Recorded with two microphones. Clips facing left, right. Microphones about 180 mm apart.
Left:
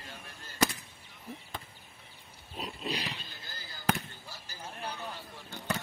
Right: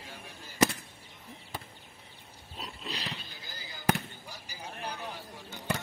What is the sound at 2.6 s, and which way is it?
Pig, 10° left (ahead or behind).